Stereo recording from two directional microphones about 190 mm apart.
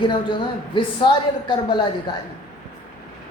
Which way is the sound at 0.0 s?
25° left (ahead or behind).